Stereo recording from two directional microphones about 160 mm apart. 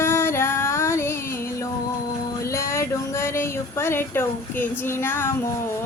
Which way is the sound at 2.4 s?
20° left (ahead or behind).